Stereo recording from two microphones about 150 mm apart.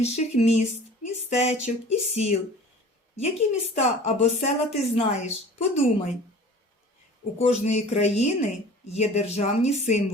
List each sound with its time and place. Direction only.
0.0 s a woman's voice: 45° left (ahead or behind)
7.3 s a woman's voice: 45° left (ahead or behind)